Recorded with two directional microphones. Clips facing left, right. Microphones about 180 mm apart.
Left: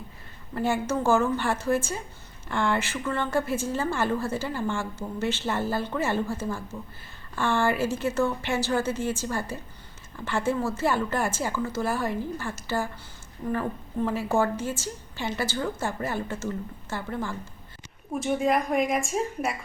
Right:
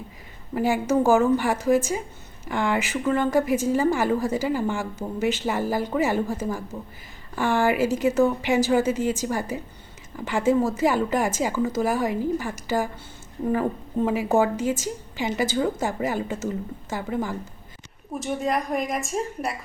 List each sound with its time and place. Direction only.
0.5 s a woman's voice: 10° right (ahead or behind)
18.2 s speech: centre (ahead or behind)